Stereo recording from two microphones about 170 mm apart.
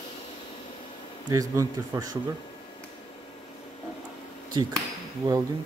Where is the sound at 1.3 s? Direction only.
20° right (ahead or behind).